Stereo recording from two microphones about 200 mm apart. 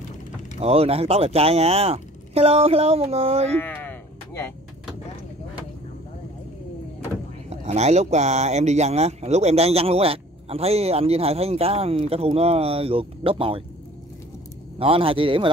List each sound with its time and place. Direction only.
0.6 s speech: 30° right (ahead or behind)
3.5 s a sound: 10° left (ahead or behind)
7.4 s speech: 35° right (ahead or behind)
14.8 s speech: 25° right (ahead or behind)